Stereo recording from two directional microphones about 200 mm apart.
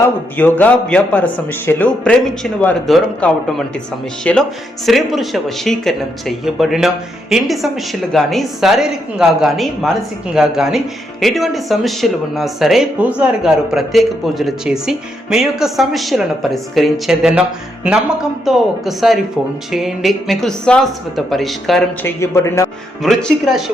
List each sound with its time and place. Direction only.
0.3 s a man's voice: 10° left (ahead or behind)
18.4 s speech: centre (ahead or behind)
22.0 s a man's voice: 15° left (ahead or behind)
23.0 s speech: centre (ahead or behind)